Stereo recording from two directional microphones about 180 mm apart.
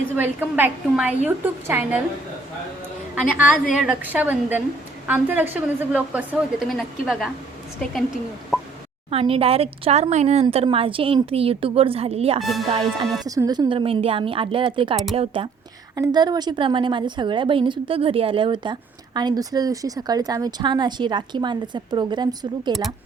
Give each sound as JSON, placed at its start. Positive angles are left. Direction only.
{"t": 0.2, "sound": "a woman's voice", "side_deg": -10}
{"t": 3.2, "sound": "a woman's voice", "side_deg": -5}
{"t": 6.7, "sound": "a woman's voice", "side_deg": 0}
{"t": 9.0, "sound": "a woman's voice", "side_deg": -30}
{"t": 13.2, "sound": "a woman's voice", "side_deg": -20}